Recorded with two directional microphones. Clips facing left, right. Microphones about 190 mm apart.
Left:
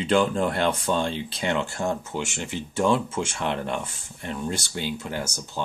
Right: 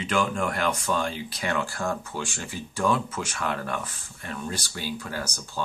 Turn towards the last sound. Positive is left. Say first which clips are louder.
# left 2 dB
turn(degrees=20)  # may be behind; listen again after turning